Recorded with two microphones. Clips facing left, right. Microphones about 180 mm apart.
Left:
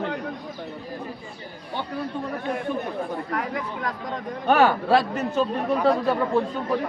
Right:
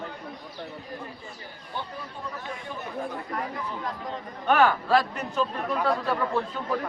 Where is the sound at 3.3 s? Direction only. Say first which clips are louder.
Left 4 dB; 80° left.